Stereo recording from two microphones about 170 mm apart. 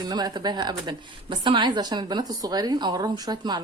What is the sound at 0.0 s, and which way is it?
A woman's voice, 25° right (ahead or behind).